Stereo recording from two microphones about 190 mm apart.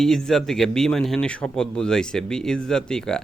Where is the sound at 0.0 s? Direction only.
Centre (ahead or behind).